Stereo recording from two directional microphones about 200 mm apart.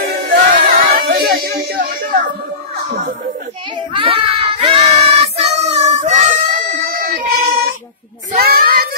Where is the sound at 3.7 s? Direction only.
25° right (ahead or behind).